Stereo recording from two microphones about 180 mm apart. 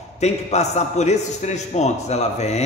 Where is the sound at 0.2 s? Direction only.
40° left (ahead or behind).